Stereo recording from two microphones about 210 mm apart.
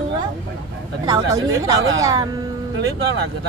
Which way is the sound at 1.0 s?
15° right (ahead or behind).